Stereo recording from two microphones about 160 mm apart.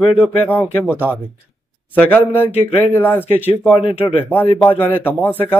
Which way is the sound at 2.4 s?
40° left (ahead or behind).